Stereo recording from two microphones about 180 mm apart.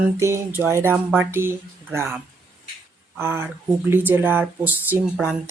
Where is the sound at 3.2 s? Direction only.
15° right (ahead or behind).